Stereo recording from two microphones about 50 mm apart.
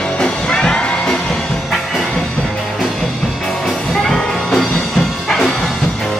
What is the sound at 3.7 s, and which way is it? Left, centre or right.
Music, centre.